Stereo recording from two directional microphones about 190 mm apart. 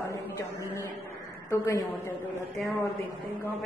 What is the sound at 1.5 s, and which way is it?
Speech, 15° left (ahead or behind).